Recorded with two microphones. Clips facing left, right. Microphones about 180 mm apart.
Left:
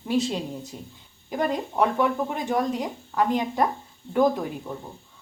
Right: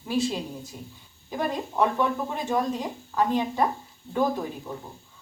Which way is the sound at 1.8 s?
15° left (ahead or behind).